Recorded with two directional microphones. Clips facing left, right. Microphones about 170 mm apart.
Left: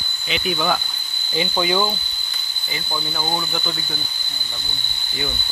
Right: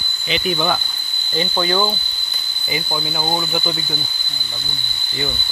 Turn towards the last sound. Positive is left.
turn(degrees=-15)  # may be behind; listen again after turning